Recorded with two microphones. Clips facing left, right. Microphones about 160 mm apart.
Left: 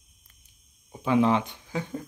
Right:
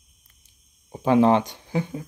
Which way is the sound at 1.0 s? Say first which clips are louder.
Right 5 dB; 40° right (ahead or behind).